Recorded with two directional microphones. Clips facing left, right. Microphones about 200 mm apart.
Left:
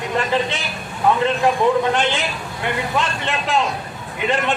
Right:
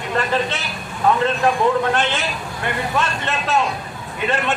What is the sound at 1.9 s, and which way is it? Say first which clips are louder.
A man's voice: left 1 dB; 15° left (ahead or behind).